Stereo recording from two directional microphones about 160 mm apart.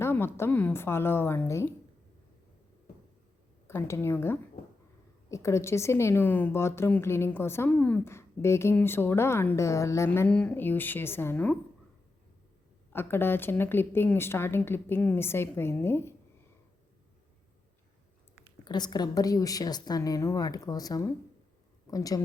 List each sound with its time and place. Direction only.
0.0 s a woman's voice: 15° left (ahead or behind)
3.7 s a woman's voice: 15° left (ahead or behind)
12.9 s a woman's voice: 15° left (ahead or behind)
18.6 s a woman's voice: 25° left (ahead or behind)